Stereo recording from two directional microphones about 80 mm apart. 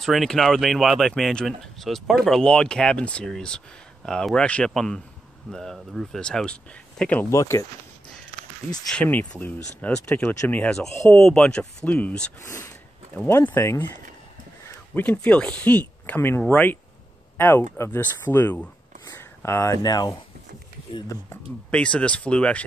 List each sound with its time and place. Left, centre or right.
0.0 s speech: centre
7.2 s speech: left
8.9 s speech: centre
12.4 s speech: left
13.4 s speech: left
15.0 s speech: centre
19.1 s a sound: left
19.8 s speech: left
21.6 s speech: centre